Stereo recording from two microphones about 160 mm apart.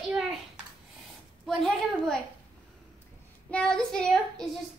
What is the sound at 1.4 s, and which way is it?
Speech, centre (ahead or behind).